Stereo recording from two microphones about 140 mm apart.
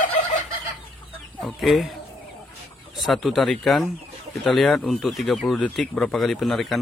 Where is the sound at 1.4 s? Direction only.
Centre (ahead or behind).